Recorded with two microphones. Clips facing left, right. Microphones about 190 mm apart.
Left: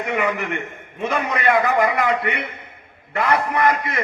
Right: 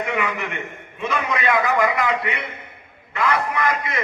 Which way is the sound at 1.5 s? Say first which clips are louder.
Left 1 dB; 55° left (ahead or behind).